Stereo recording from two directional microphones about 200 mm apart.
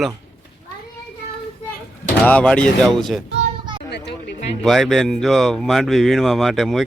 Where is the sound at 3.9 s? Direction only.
55° left (ahead or behind).